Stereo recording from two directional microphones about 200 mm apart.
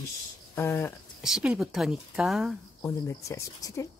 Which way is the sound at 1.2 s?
5° right (ahead or behind).